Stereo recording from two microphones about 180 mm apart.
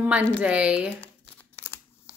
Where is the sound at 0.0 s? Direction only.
10° right (ahead or behind).